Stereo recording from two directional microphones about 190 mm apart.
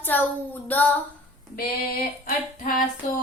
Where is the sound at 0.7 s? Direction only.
10° left (ahead or behind).